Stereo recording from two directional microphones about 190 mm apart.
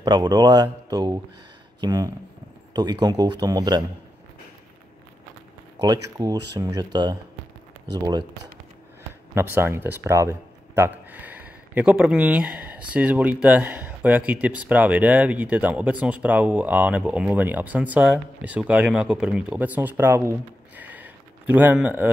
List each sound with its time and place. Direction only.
0.0 s speech: 20° right (ahead or behind)
5.8 s speech: 20° right (ahead or behind)
9.3 s speech: 10° right (ahead or behind)